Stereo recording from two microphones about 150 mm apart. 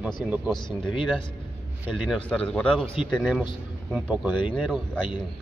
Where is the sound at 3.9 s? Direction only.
10° right (ahead or behind).